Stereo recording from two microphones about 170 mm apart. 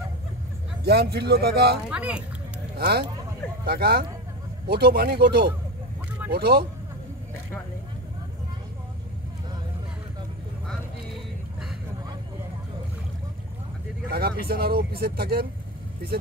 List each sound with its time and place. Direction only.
0.8 s speech: 70° right (ahead or behind)
1.9 s speech: 5° right (ahead or behind)
2.8 s speech: 70° right (ahead or behind)
14.1 s speech: 65° right (ahead or behind)